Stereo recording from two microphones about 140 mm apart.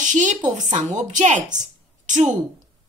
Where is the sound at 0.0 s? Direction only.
60° right (ahead or behind).